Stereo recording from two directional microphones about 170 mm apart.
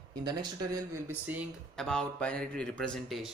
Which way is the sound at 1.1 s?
10° right (ahead or behind).